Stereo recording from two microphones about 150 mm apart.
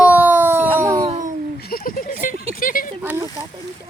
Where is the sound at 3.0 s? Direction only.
10° right (ahead or behind).